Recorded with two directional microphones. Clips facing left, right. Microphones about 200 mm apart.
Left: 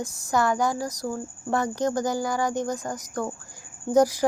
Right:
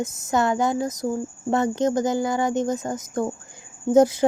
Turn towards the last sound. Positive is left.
turn(degrees=-25)  # may be behind; listen again after turning